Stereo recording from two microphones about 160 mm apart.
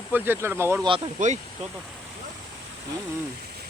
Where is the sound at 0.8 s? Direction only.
30° right (ahead or behind).